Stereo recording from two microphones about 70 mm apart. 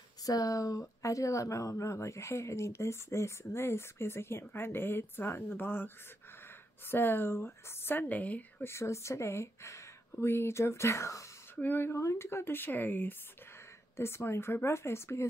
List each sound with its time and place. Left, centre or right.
0.2 s speech: left
6.9 s a woman's voice: left
8.6 s speech: left
11.5 s speech: left